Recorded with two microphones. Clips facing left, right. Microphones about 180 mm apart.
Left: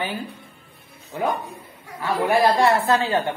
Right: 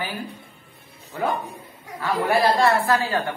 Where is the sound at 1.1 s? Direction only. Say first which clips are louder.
Left 1 dB; 20° left (ahead or behind).